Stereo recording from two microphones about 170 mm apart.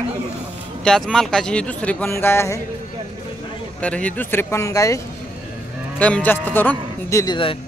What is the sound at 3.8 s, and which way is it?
Speech, 5° left (ahead or behind).